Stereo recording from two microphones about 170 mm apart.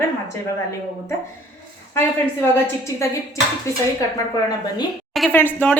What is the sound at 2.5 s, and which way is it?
Speech, 15° left (ahead or behind).